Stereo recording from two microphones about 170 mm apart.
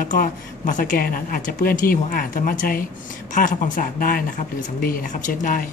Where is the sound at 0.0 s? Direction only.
55° left (ahead or behind).